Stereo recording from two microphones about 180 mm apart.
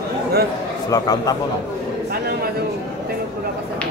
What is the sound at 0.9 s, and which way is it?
Speech, 20° left (ahead or behind).